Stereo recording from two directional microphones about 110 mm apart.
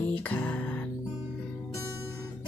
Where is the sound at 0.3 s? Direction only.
15° left (ahead or behind).